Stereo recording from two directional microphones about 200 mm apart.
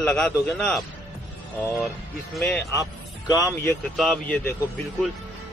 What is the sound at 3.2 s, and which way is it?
Speech, 20° left (ahead or behind).